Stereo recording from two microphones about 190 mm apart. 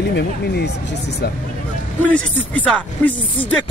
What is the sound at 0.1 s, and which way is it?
Speech, 60° left (ahead or behind).